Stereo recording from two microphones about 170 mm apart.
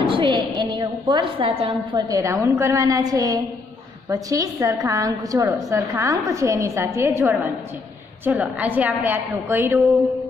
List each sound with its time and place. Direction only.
0.0 s a woman's voice: 30° right (ahead or behind)
2.0 s a woman's voice: 20° right (ahead or behind)